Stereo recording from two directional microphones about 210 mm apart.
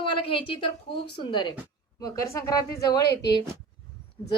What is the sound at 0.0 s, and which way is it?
A woman's voice, 25° left (ahead or behind).